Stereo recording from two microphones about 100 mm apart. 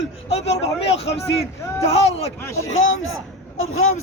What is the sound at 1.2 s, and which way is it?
Speech, 25° left (ahead or behind).